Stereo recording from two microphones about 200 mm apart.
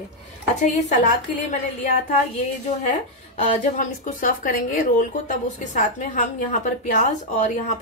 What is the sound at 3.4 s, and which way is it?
Speech, 40° left (ahead or behind).